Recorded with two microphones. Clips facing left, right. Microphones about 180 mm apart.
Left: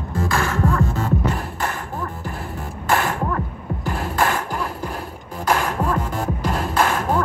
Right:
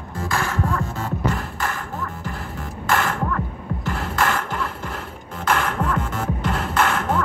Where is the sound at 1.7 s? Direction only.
15° left (ahead or behind).